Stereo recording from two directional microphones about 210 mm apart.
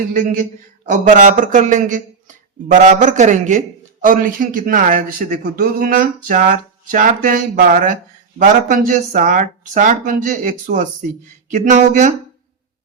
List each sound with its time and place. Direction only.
0.1 s speech: 35° right (ahead or behind)